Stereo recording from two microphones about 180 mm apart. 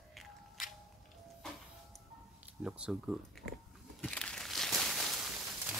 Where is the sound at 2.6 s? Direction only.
5° right (ahead or behind).